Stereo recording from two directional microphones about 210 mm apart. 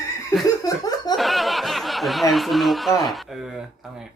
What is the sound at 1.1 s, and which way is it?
Speech, centre (ahead or behind).